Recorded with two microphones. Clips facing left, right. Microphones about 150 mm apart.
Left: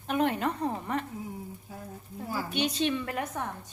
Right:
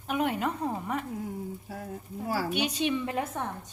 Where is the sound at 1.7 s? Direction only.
80° right.